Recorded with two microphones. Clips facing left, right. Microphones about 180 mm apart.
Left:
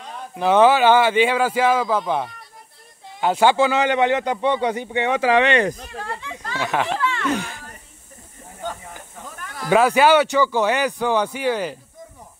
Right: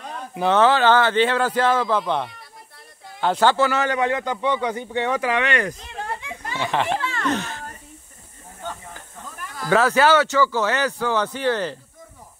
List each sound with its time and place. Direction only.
0.5 s speech: 10° left (ahead or behind); by 5.8 s 25° left (ahead or behind)
5.9 s children playing: 20° right (ahead or behind)
6.6 s speech: 5° left (ahead or behind)
7.0 s a sound: 40° right (ahead or behind)
7.2 s speech: 10° left (ahead or behind)
9.6 s speech: 15° left (ahead or behind)